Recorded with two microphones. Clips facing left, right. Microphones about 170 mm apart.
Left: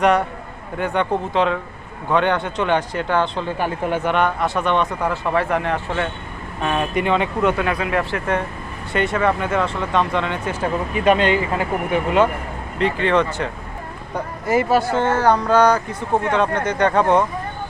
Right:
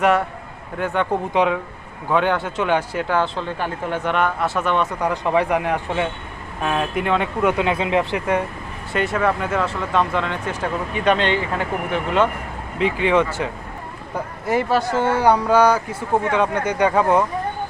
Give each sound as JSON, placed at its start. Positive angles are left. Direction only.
{"t": 0.0, "sound": "speech", "side_deg": -5}
{"t": 1.3, "sound": "speech", "side_deg": -10}
{"t": 3.6, "sound": "speech", "side_deg": 10}
{"t": 6.6, "sound": "speech", "side_deg": 0}
{"t": 7.5, "sound": "speech", "side_deg": -20}
{"t": 8.9, "sound": "speech", "side_deg": 0}
{"t": 12.8, "sound": "speech", "side_deg": -10}
{"t": 14.4, "sound": "speech", "side_deg": 5}
{"t": 14.9, "sound": "speech", "side_deg": -10}